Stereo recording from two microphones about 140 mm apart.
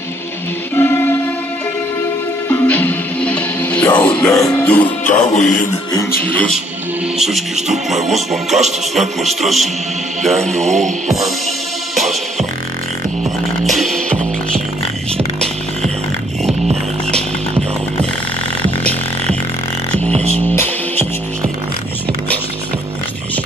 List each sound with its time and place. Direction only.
0.7 s music: 15° left (ahead or behind)
2.4 s music: 15° left (ahead or behind)
5.3 s music: 60° left (ahead or behind)
6.2 s speech: 10° left (ahead or behind)
7.2 s music: 5° right (ahead or behind)
10.5 s music: 55° right (ahead or behind)
11.1 s music: centre (ahead or behind)
13.7 s music: centre (ahead or behind)
20.3 s music: 15° left (ahead or behind)